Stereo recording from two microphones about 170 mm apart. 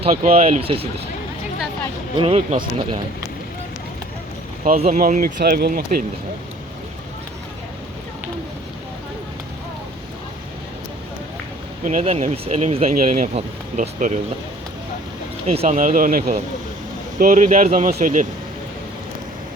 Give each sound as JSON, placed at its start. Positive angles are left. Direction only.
{"t": 0.3, "sound": "speech", "side_deg": -40}
{"t": 2.1, "sound": "speech", "side_deg": -35}
{"t": 4.8, "sound": "speech", "side_deg": -50}
{"t": 11.9, "sound": "speech", "side_deg": -45}
{"t": 13.0, "sound": "speech", "side_deg": -50}
{"t": 15.4, "sound": "speech", "side_deg": -40}